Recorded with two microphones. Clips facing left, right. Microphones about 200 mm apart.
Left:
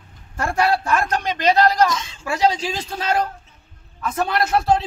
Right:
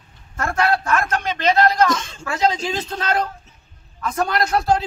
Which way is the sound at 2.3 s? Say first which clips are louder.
Left 1 dB; 10° left (ahead or behind).